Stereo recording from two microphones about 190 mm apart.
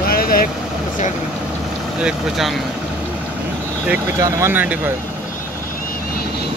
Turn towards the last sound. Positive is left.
turn(degrees=-10)  # may be behind; listen again after turning